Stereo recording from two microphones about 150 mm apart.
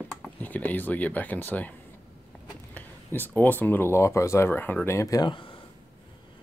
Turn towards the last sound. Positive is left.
turn(degrees=30)  # may be behind; listen again after turning